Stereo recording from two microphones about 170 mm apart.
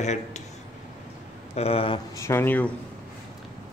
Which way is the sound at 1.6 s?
35° left (ahead or behind).